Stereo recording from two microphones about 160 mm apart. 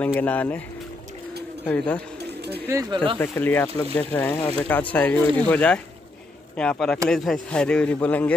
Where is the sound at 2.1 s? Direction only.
90° right.